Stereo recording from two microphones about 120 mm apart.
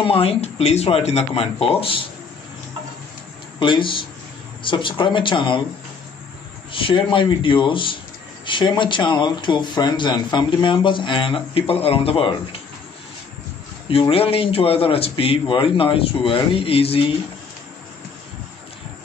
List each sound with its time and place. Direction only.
0.0 s speech: 50° left (ahead or behind)
3.5 s a man's voice: 45° left (ahead or behind)
6.7 s a man's voice: 45° left (ahead or behind)
13.8 s a man's voice: 50° left (ahead or behind)